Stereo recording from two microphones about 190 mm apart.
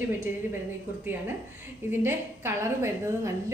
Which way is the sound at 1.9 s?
10° right (ahead or behind).